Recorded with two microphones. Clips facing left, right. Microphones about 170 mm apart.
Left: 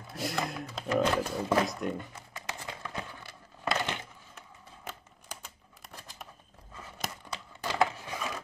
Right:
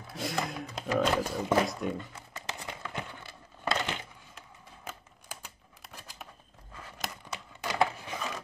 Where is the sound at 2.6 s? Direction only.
20° right (ahead or behind).